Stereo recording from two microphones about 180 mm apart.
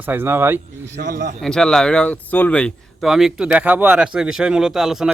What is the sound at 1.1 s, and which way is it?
Speech, 45° right (ahead or behind).